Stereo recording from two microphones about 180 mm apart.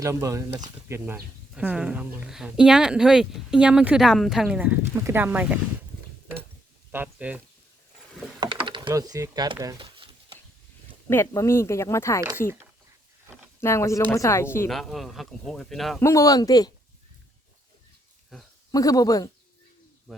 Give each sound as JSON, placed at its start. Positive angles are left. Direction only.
{"t": 0.0, "sound": "a woman's voice", "side_deg": -15}
{"t": 6.9, "sound": "speech", "side_deg": -10}
{"t": 8.4, "sound": "speech", "side_deg": -25}
{"t": 9.7, "sound": "a sound", "side_deg": -30}
{"t": 11.1, "sound": "speech", "side_deg": 15}
{"t": 13.6, "sound": "speech", "side_deg": 15}
{"t": 14.7, "sound": "a woman's voice", "side_deg": 0}
{"t": 16.0, "sound": "speech", "side_deg": 15}
{"t": 18.3, "sound": "speech", "side_deg": 0}
{"t": 18.7, "sound": "speech", "side_deg": 20}
{"t": 20.1, "sound": "speech", "side_deg": 0}